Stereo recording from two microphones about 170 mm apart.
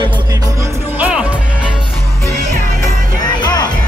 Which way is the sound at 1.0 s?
10° right (ahead or behind).